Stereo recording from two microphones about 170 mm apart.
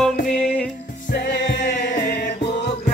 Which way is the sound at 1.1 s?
75° left (ahead or behind).